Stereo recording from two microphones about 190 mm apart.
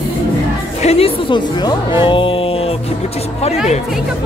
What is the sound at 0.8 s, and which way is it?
Speech, 30° left (ahead or behind).